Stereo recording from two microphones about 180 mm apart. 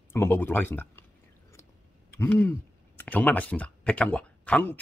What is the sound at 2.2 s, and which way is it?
Speech, 10° left (ahead or behind).